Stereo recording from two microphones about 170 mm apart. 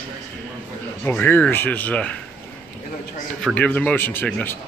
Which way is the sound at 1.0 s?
10° left (ahead or behind).